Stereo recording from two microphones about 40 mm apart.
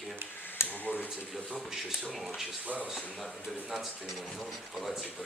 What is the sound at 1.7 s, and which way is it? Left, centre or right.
Speech, centre.